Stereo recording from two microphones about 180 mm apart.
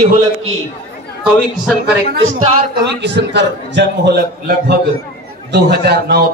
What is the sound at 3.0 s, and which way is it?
A man's voice, 75° right (ahead or behind).